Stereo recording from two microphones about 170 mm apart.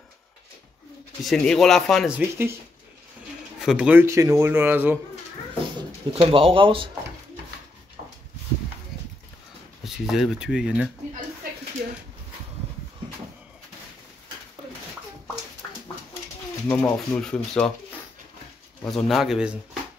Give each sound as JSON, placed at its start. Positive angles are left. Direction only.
{"t": 1.2, "sound": "speech", "side_deg": 5}
{"t": 3.5, "sound": "speech", "side_deg": -5}
{"t": 5.8, "sound": "speech", "side_deg": -30}
{"t": 9.8, "sound": "speech", "side_deg": 0}
{"t": 16.6, "sound": "speech", "side_deg": 10}
{"t": 18.9, "sound": "speech", "side_deg": 0}